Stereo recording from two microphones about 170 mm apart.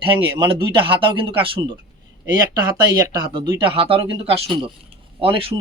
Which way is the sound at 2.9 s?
20° right (ahead or behind).